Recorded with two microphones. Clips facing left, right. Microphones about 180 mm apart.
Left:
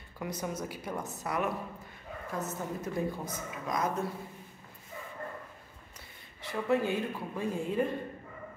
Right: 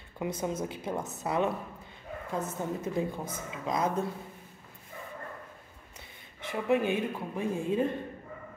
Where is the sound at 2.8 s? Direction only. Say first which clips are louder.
Right 2 dB; 25° right (ahead or behind).